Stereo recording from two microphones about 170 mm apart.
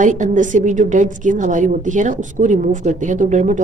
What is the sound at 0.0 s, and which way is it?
A woman's voice, 50° right (ahead or behind).